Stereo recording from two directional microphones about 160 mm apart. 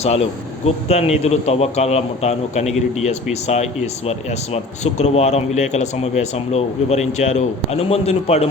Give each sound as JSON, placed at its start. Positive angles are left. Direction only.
{"t": 0.0, "sound": "a man's voice", "side_deg": 40}